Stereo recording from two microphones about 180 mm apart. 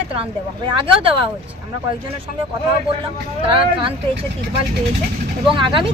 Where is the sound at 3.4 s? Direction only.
30° right (ahead or behind).